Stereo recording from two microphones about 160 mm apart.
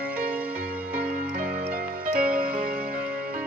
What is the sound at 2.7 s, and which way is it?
Music, 10° right (ahead or behind).